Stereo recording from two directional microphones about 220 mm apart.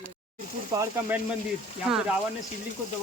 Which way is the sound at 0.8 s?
10° right (ahead or behind).